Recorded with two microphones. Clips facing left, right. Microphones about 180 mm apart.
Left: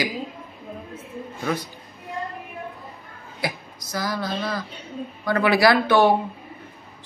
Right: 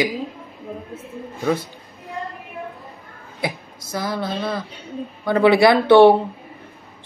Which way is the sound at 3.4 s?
25° right (ahead or behind).